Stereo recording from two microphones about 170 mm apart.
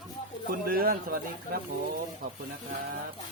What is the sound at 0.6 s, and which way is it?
Speech, 60° right (ahead or behind).